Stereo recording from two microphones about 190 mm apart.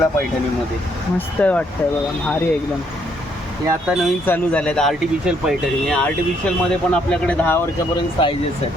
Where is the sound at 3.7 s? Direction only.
5° right (ahead or behind).